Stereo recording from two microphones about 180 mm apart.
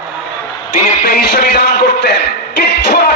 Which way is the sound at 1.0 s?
65° left (ahead or behind).